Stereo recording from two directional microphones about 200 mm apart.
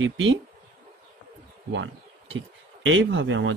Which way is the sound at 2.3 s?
75° right (ahead or behind).